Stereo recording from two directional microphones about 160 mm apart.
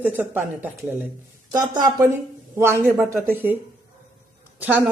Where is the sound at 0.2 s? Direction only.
10° right (ahead or behind).